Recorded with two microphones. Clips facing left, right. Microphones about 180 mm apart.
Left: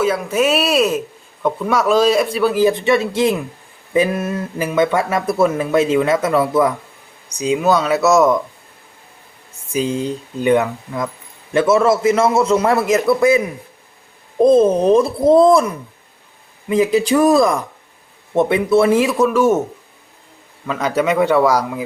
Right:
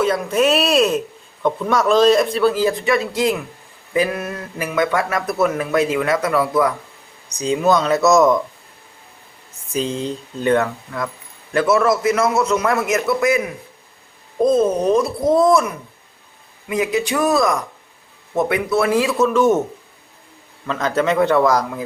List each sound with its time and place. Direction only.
0.0 s speech: 5° left (ahead or behind); by 6.7 s 25° left (ahead or behind)
7.3 s speech: 10° left (ahead or behind)
9.7 s speech: 10° left (ahead or behind); by 13.4 s 30° left (ahead or behind)
14.4 s a man's voice: 30° left (ahead or behind); by 19.6 s 10° left (ahead or behind)
20.7 s speech: 10° left (ahead or behind)